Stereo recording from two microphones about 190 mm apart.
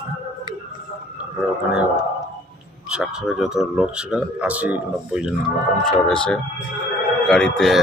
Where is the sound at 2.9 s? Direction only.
5° right (ahead or behind).